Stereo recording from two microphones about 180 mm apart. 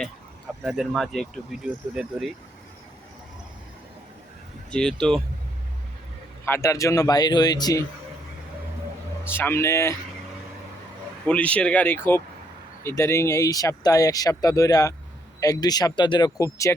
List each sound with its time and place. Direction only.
0.6 s speech: centre (ahead or behind)
4.7 s speech: 5° left (ahead or behind)
6.4 s speech: 15° left (ahead or behind)
9.3 s speech: 10° left (ahead or behind)
11.3 s speech: 5° left (ahead or behind)